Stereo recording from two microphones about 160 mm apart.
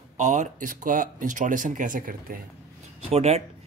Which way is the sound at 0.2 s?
50° right (ahead or behind).